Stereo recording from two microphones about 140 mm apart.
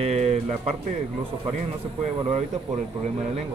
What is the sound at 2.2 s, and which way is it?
Speech, 45° right (ahead or behind).